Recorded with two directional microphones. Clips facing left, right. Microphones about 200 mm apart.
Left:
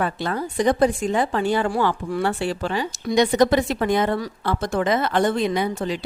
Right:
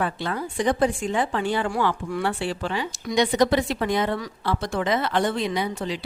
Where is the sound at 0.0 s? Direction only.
45° left (ahead or behind).